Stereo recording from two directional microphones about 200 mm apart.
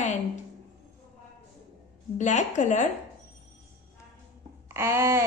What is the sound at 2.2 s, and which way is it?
Speech, 35° left (ahead or behind).